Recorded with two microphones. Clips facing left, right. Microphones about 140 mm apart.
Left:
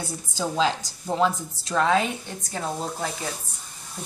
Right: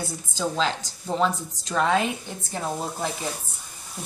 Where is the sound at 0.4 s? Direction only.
10° left (ahead or behind).